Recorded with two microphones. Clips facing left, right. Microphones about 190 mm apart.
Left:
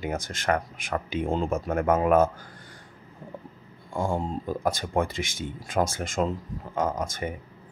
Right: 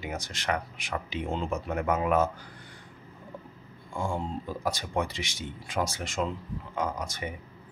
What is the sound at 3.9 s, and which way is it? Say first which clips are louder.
Speech: left 4 dB; 40° left (ahead or behind).